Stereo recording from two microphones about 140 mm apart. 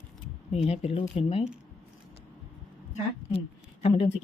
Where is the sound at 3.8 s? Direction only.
45° left (ahead or behind).